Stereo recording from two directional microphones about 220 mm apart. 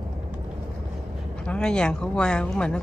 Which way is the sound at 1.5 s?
5° left (ahead or behind).